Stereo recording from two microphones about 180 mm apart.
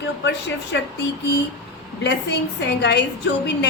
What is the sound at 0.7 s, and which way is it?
Speech, 80° left.